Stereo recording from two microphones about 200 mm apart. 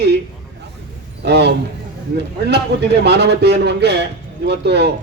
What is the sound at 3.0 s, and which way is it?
A man's voice, 55° right (ahead or behind).